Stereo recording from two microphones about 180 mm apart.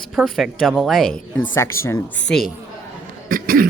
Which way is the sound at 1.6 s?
15° left (ahead or behind).